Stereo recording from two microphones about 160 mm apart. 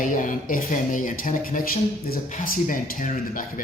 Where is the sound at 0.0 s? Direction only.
55° left (ahead or behind).